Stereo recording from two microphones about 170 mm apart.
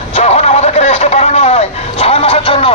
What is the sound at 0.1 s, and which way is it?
Vehicle, 40° left (ahead or behind).